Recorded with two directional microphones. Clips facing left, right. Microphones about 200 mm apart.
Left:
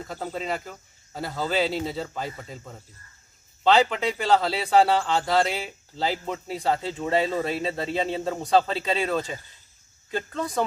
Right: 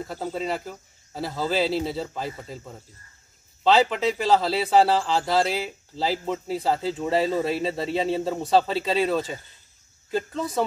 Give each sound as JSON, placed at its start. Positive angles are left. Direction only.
{"t": 0.0, "sound": "a man's voice", "side_deg": -5}